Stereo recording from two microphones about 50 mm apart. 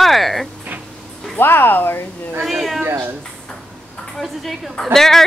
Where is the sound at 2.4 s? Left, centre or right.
Centre.